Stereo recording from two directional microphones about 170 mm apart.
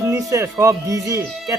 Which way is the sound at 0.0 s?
20° right (ahead or behind).